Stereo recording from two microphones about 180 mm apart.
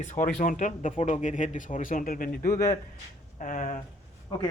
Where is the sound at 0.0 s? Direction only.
40° left (ahead or behind).